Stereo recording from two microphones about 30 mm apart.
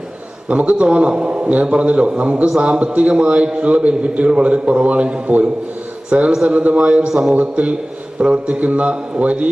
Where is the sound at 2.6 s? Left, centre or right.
Right.